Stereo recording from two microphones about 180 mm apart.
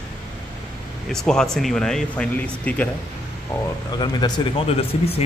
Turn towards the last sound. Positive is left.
turn(degrees=35)  # may be behind; listen again after turning